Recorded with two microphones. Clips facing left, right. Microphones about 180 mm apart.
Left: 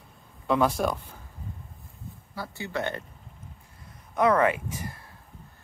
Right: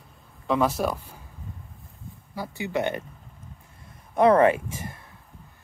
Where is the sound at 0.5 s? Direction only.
Centre (ahead or behind).